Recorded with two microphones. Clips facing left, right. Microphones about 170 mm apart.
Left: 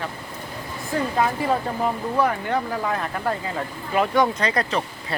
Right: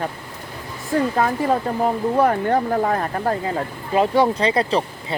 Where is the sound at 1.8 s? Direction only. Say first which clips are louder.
Right 5 dB; 45° right (ahead or behind); by 5.2 s 30° right (ahead or behind).